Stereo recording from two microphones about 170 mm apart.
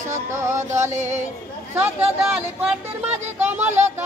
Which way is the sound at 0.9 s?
45° right (ahead or behind).